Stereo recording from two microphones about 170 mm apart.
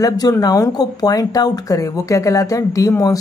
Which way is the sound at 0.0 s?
20° left (ahead or behind).